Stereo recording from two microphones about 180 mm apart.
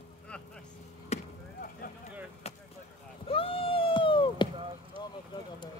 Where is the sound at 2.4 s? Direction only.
35° left (ahead or behind).